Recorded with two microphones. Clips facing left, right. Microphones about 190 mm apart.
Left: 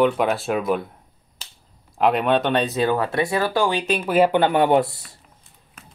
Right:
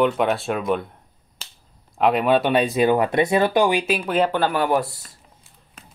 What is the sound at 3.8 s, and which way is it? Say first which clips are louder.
Speech: even; 5° right (ahead or behind).